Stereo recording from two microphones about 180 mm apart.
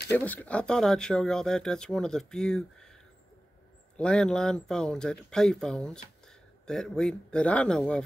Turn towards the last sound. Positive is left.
turn(degrees=5)  # may be behind; listen again after turning